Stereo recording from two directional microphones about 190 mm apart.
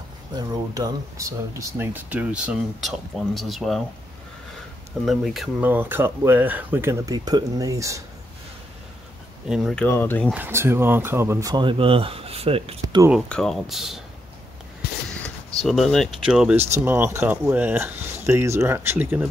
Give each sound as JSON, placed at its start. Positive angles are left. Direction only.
{"t": 0.4, "sound": "speech", "side_deg": -20}
{"t": 5.0, "sound": "speech", "side_deg": 0}
{"t": 9.5, "sound": "speech", "side_deg": 0}
{"t": 9.8, "sound": "speech", "side_deg": 10}
{"t": 10.3, "sound": "speech", "side_deg": -10}
{"t": 12.8, "sound": "speech", "side_deg": -20}
{"t": 13.3, "sound": "speech", "side_deg": 0}
{"t": 15.2, "sound": "speech", "side_deg": 0}